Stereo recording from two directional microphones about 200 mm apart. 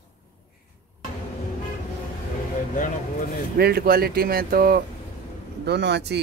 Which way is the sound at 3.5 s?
50° right (ahead or behind).